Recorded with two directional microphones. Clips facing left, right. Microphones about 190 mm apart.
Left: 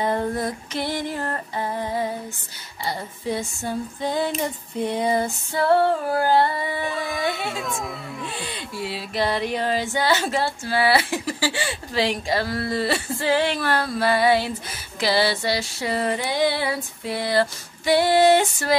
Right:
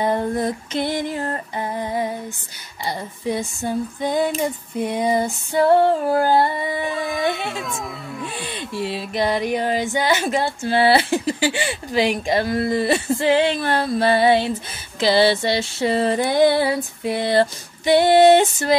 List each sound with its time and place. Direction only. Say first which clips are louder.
0.0 s music: right 3 dB; 20° right (ahead or behind)
3.3 s female singing: right 3 dB; 15° right (ahead or behind)
6.9 s speech: right 3 dB; centre (ahead or behind)
8.4 s female singing: right 3 dB; 20° right (ahead or behind)
8.8 s music: right 2 dB; 20° right (ahead or behind)
16.2 s music: right 7 dB; 50° right (ahead or behind)
17.0 s music: right 4 dB; 20° right (ahead or behind)